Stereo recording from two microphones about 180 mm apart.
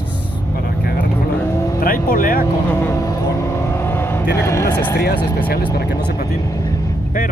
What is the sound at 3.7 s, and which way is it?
Vehicle, 15° left (ahead or behind).